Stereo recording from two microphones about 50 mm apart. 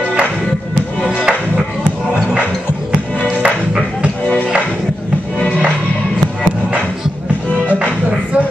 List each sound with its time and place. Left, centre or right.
3.2 s music: centre